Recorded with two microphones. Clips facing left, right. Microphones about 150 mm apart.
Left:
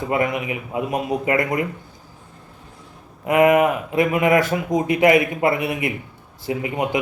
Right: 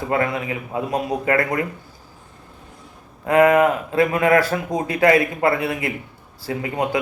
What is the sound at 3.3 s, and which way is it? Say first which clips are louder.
A man's voice: right 1 dB; 20° left (ahead or behind).